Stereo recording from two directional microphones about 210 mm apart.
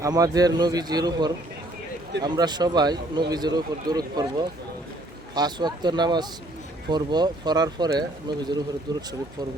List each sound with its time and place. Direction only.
0.0 s a man's voice: 15° right (ahead or behind)